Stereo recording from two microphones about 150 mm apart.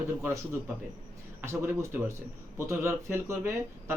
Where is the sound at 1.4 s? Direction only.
15° right (ahead or behind).